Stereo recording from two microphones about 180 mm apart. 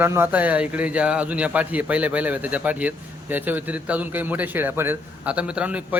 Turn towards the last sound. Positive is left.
turn(degrees=-5)  # may be behind; listen again after turning